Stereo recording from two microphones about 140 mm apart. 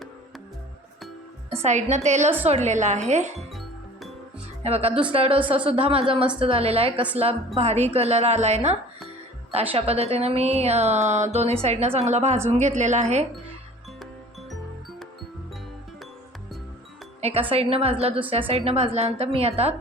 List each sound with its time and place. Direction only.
1.6 s speech: 60° right (ahead or behind)
3.5 s music: centre (ahead or behind)
4.6 s a woman's voice: 45° right (ahead or behind)
17.2 s a woman's voice: 50° right (ahead or behind)